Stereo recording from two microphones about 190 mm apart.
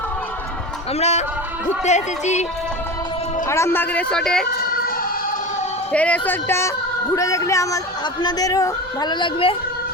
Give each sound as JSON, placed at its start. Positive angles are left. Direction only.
{"t": 0.9, "sound": "speech", "side_deg": 35}
{"t": 3.5, "sound": "speech", "side_deg": 15}
{"t": 4.5, "sound": "a sound", "side_deg": 50}
{"t": 5.9, "sound": "a woman's voice", "side_deg": 5}